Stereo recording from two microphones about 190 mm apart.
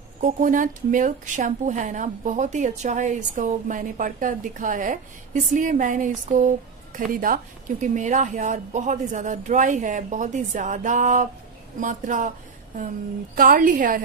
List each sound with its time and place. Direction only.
0.2 s a woman's voice: 45° right (ahead or behind)